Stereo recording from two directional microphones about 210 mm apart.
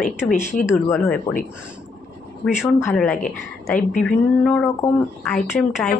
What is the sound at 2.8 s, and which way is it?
A woman's voice, 5° left (ahead or behind).